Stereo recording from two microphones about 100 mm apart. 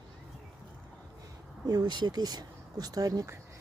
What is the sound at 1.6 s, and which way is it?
Speech, 40° right (ahead or behind).